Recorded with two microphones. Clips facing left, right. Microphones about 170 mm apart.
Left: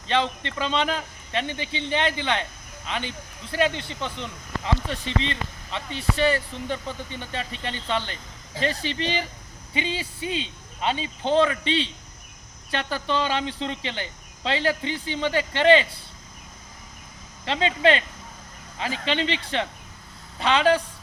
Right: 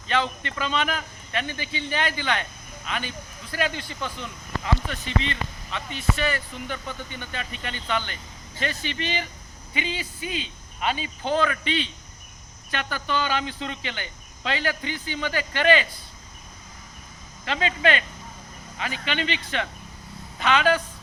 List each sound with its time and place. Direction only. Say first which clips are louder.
0.1 s a man's voice: left 1 dB; 30° left (ahead or behind)
17.4 s a man's voice: left 3 dB; 25° left (ahead or behind)